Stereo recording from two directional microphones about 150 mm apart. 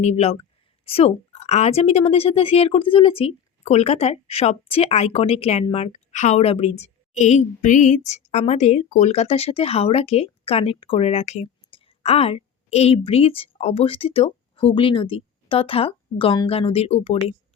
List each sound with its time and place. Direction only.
0.0 s a woman's voice: 50° left (ahead or behind)